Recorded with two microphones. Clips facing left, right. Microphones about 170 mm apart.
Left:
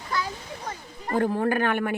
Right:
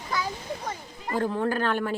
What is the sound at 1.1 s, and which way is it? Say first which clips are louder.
Speech: left 3 dB; 60° left (ahead or behind).